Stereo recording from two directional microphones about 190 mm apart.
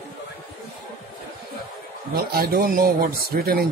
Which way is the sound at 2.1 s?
55° right (ahead or behind).